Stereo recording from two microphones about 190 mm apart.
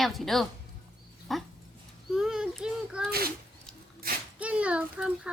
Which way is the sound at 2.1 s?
5° right (ahead or behind).